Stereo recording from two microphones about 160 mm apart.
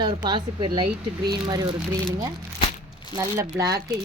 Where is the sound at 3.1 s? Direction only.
20° right (ahead or behind).